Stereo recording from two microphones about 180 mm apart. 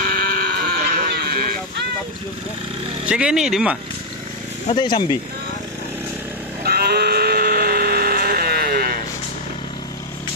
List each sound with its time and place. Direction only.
0.0 s sheep: 55° right (ahead or behind)
3.1 s speech: 5° right (ahead or behind)
4.7 s speech: 25° left (ahead or behind)
6.6 s music: 60° right (ahead or behind)